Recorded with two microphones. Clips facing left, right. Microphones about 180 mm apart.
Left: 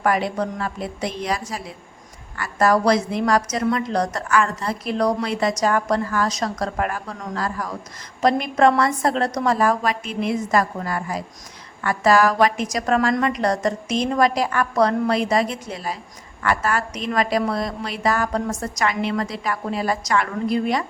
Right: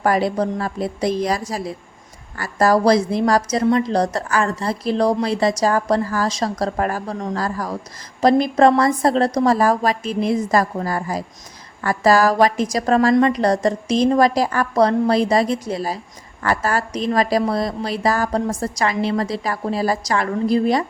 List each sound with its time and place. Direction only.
0.0 s a woman's voice: 35° right (ahead or behind)